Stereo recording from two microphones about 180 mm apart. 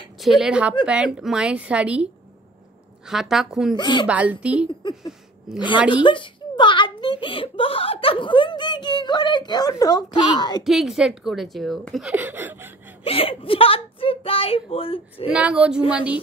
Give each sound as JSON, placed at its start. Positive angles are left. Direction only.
{"t": 0.2, "sound": "a woman's voice", "side_deg": 0}
{"t": 3.1, "sound": "a woman's voice", "side_deg": 0}
{"t": 3.7, "sound": "speech", "side_deg": 25}
{"t": 4.1, "sound": "a woman's voice", "side_deg": -10}
{"t": 5.9, "sound": "a child's voice", "side_deg": 25}
{"t": 10.6, "sound": "a woman's voice", "side_deg": 0}
{"t": 13.0, "sound": "a woman's voice", "side_deg": 30}
{"t": 15.3, "sound": "a woman's voice", "side_deg": -5}